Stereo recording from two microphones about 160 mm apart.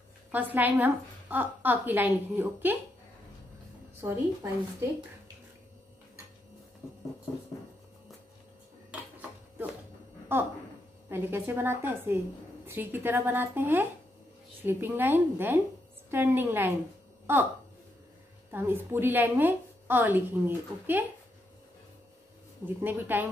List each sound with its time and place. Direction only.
0.3 s a woman's voice: 10° right (ahead or behind)
4.0 s a woman's voice: 15° right (ahead or behind)
11.1 s a woman's voice: 15° right (ahead or behind)
18.5 s a woman's voice: 15° right (ahead or behind)
22.8 s a woman's voice: 10° right (ahead or behind)